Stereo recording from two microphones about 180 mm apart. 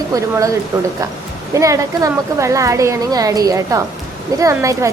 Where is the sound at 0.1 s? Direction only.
20° right (ahead or behind).